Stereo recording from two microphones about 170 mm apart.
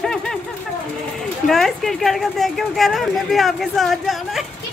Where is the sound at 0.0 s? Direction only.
5° left (ahead or behind).